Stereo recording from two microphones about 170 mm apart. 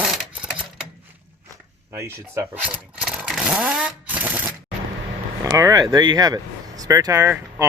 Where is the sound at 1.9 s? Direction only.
15° right (ahead or behind).